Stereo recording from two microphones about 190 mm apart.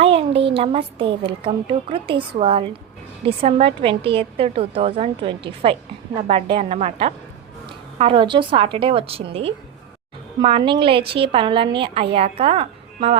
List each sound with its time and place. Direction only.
0.0 s a woman's voice: 30° right (ahead or behind)